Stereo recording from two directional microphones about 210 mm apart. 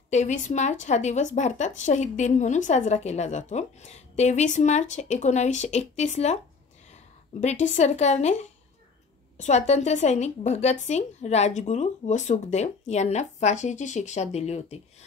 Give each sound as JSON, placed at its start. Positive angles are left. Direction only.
{"t": 0.1, "sound": "speech", "side_deg": 35}